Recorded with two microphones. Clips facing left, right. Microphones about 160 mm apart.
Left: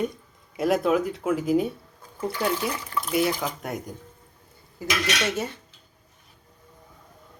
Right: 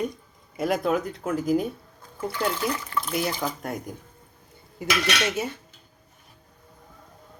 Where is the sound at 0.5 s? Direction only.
Centre (ahead or behind).